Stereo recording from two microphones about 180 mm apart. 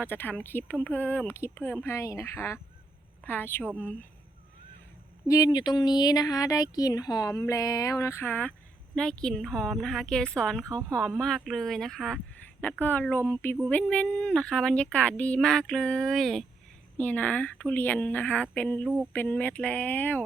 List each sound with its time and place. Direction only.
0.0 s speech: 10° left (ahead or behind)
5.3 s speech: 20° left (ahead or behind); by 10.7 s 5° left (ahead or behind)
10.7 s speech: 20° right (ahead or behind)
10.9 s speech: 5° left (ahead or behind)